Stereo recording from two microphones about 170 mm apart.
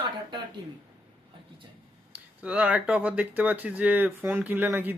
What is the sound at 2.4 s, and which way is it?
Speech, 5° right (ahead or behind).